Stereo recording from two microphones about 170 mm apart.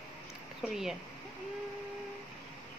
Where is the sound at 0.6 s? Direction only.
Centre (ahead or behind).